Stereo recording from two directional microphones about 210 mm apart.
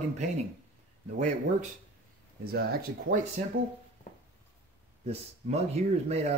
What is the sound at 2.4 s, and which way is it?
Speech, 45° right (ahead or behind).